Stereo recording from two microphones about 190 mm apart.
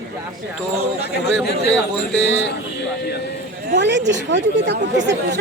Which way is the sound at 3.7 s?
65° right (ahead or behind).